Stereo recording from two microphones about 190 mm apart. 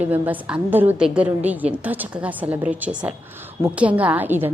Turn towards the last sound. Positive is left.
turn(degrees=-10)  # may be behind; listen again after turning